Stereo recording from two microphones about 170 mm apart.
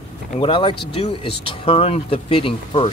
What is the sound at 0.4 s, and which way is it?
Speech, 30° left (ahead or behind).